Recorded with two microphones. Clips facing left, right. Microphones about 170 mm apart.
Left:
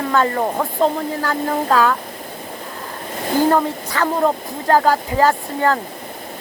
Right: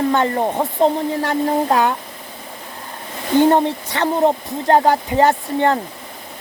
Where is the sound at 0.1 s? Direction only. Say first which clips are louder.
Even; 25° right (ahead or behind).